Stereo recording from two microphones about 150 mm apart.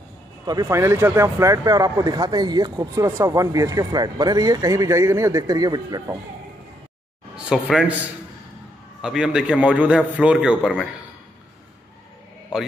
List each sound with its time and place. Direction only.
0.5 s speech: 20° right (ahead or behind)
7.3 s a sound: 5° right (ahead or behind)
9.0 s a man's voice: 5° right (ahead or behind)